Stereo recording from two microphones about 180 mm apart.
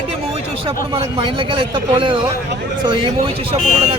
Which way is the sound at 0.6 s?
30° right (ahead or behind).